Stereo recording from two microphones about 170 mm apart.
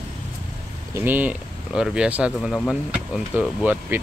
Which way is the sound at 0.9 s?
10° right (ahead or behind).